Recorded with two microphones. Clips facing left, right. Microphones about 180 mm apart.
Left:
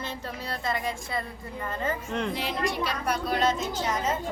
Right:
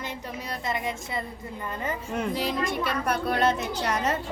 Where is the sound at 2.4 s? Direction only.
45° right (ahead or behind); by 4.2 s 70° right (ahead or behind).